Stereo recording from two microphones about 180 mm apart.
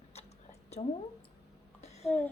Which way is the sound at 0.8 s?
35° left (ahead or behind).